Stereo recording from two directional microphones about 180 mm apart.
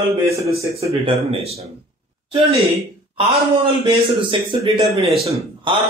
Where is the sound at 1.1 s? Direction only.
30° right (ahead or behind).